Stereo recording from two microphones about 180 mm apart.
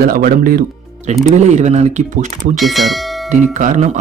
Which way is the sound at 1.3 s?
40° right (ahead or behind).